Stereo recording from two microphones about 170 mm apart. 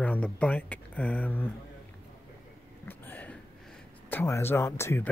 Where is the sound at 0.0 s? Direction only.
10° left (ahead or behind).